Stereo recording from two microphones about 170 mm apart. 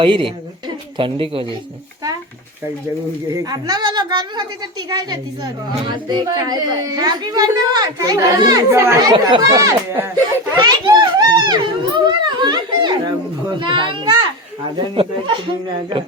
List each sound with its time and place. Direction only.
0.0 s speech: 30° right (ahead or behind)
3.2 s a child's voice: 25° right (ahead or behind)